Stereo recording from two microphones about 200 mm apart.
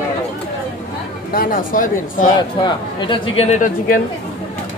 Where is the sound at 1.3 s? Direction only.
45° left (ahead or behind).